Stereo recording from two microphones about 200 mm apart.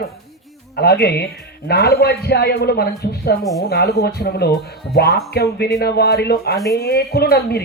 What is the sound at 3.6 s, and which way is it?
Speech, 55° left (ahead or behind).